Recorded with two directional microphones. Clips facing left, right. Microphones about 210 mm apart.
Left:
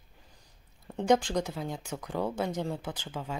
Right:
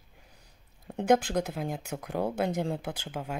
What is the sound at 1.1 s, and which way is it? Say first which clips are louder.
Speech: right 1 dB; 5° right (ahead or behind).